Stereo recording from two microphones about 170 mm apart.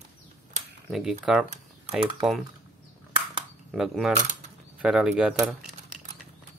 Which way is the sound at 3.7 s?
Centre (ahead or behind).